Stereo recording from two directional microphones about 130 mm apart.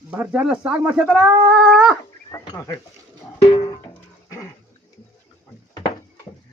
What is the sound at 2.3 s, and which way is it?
Speech, 25° left (ahead or behind).